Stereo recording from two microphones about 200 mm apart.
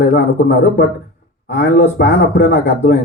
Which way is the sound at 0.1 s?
45° left (ahead or behind).